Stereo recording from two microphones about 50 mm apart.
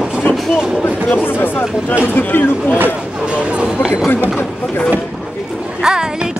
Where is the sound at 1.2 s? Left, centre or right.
Left.